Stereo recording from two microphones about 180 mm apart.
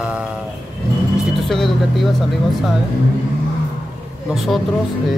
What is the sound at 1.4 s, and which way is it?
Speech, centre (ahead or behind).